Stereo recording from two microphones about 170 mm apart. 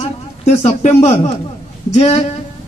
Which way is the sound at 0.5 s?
40° left (ahead or behind).